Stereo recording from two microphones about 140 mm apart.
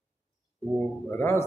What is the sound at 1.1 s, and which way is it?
Speech, 15° left (ahead or behind).